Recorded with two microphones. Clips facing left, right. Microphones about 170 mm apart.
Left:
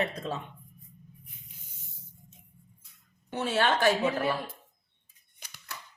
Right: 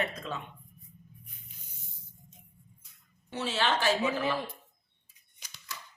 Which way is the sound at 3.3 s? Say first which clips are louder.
Left 3 dB; 55° left (ahead or behind).